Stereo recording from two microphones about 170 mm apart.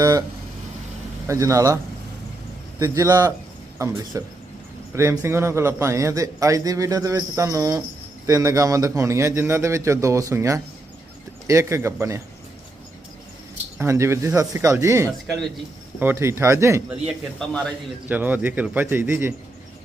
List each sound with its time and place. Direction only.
0.0 s speech: 20° right (ahead or behind)
1.3 s a man's voice: 20° right (ahead or behind)
13.7 s a man's voice: 15° right (ahead or behind)
17.5 s a man's voice: 5° left (ahead or behind)
18.1 s a man's voice: 10° right (ahead or behind)